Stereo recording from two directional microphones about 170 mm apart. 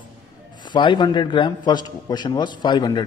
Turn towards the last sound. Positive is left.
turn(degrees=25)  # may be behind; listen again after turning